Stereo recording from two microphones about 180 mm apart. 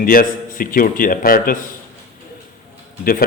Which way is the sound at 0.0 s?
50° left (ahead or behind).